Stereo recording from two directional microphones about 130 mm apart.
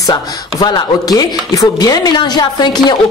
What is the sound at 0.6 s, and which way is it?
Speech, 35° left (ahead or behind).